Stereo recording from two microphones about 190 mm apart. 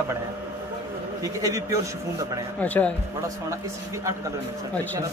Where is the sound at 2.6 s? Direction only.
10° left (ahead or behind).